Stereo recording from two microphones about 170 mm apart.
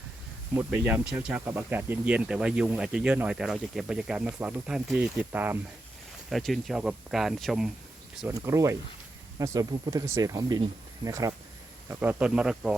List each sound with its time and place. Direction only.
0.5 s speech: 10° right (ahead or behind)
6.3 s speech: centre (ahead or behind)
8.3 s speech: 20° right (ahead or behind)